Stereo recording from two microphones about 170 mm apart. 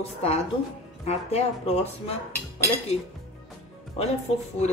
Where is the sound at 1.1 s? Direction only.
40° left (ahead or behind).